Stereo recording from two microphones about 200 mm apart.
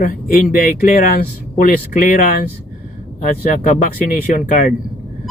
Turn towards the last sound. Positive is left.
turn(degrees=45)  # may be behind; listen again after turning